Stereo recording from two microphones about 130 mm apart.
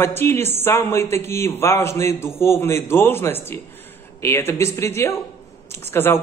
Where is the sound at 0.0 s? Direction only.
20° left (ahead or behind).